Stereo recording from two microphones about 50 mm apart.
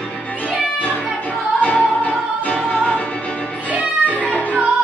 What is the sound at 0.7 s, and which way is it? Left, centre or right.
Music, left.